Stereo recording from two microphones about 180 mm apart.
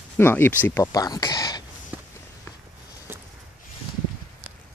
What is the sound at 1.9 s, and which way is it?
Walk, 10° right (ahead or behind).